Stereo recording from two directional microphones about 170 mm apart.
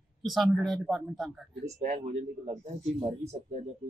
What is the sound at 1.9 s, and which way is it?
Speech, 40° right (ahead or behind).